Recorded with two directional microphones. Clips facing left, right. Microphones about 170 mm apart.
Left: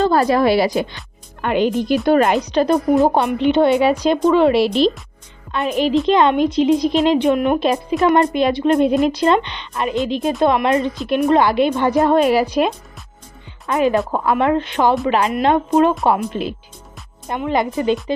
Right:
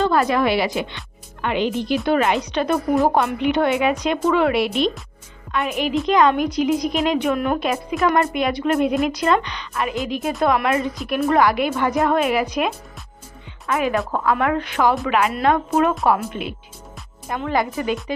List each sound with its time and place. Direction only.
0.0 s a woman's voice: 35° left (ahead or behind)
3.0 s a woman's voice: 25° left (ahead or behind)
17.2 s a woman's voice: 20° left (ahead or behind)